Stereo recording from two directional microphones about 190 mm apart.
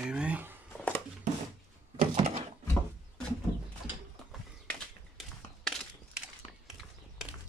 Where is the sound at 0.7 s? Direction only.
10° left (ahead or behind).